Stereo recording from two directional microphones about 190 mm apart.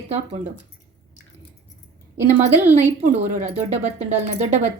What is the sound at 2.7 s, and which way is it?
A woman's voice, 35° right (ahead or behind).